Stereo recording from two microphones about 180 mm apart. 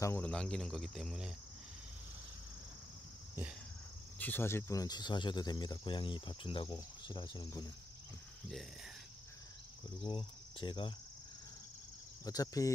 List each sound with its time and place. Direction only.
0.0 s speech: 10° left (ahead or behind)
4.2 s speech: 10° left (ahead or behind)
10.0 s cricket: 25° left (ahead or behind)
12.3 s speech: 20° left (ahead or behind)